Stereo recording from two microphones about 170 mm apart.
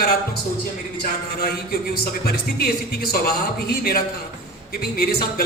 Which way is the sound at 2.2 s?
65° left (ahead or behind).